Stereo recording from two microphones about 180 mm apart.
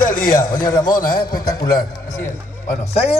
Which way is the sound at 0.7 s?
15° left (ahead or behind).